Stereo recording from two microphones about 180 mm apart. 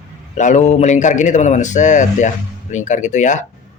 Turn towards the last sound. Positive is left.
turn(degrees=45)  # may be behind; listen again after turning